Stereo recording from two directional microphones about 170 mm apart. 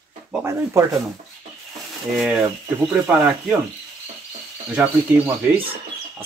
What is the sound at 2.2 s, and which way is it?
Speech, 5° right (ahead or behind).